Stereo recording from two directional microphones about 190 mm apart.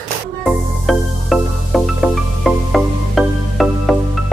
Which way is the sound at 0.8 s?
Centre (ahead or behind).